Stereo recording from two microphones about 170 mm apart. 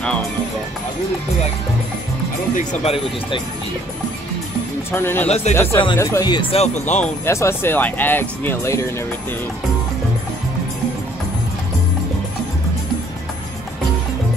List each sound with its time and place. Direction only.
2.5 s speech: 40° left (ahead or behind)
4.9 s speech: 10° left (ahead or behind)
6.5 s speech: 40° left (ahead or behind)
7.2 s speech: 15° left (ahead or behind)